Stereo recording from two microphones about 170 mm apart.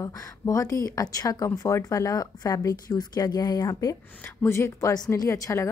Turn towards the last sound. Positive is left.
turn(degrees=20)  # may be behind; listen again after turning